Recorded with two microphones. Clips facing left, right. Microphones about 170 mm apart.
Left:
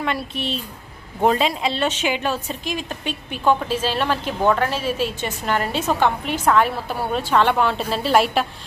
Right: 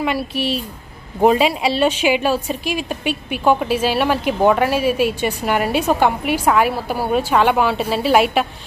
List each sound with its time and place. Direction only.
0.0 s a woman's voice: 10° right (ahead or behind)